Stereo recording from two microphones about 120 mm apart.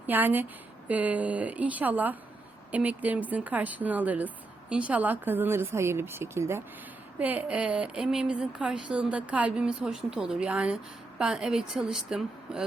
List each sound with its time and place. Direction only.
0.1 s a woman's voice: 15° right (ahead or behind)